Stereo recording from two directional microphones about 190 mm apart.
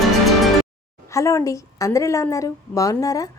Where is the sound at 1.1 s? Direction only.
15° left (ahead or behind).